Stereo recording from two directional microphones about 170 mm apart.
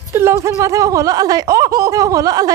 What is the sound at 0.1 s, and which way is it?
Speech, 15° right (ahead or behind).